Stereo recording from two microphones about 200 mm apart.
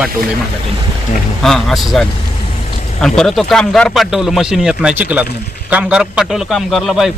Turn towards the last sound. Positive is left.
turn(degrees=0)  # may be behind; listen again after turning